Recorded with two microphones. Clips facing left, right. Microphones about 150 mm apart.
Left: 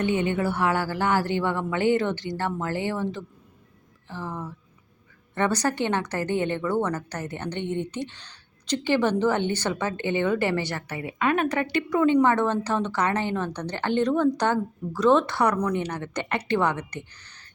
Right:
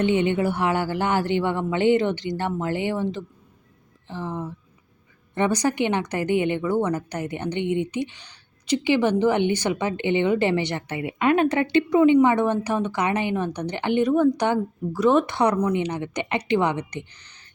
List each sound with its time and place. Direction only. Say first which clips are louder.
0.0 s a woman's voice: right 3 dB; 20° right (ahead or behind)